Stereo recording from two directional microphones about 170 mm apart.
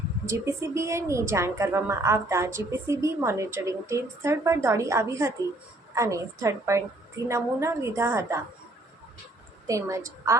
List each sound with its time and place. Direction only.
0.3 s a woman's voice: 15° right (ahead or behind)
9.6 s a woman's voice: 20° right (ahead or behind)